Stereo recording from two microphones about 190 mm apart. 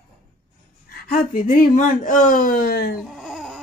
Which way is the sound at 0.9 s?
50° left (ahead or behind).